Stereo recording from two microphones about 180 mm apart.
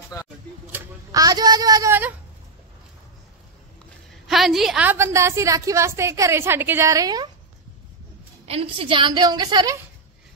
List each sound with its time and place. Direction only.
0.2 s speech: 20° left (ahead or behind)
0.7 s a sound: 15° right (ahead or behind)
4.3 s a woman's voice: centre (ahead or behind); by 7.2 s 20° right (ahead or behind)
8.5 s a woman's voice: 30° right (ahead or behind)